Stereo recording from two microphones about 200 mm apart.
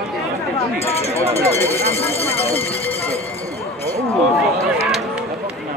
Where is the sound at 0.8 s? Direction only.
30° left (ahead or behind).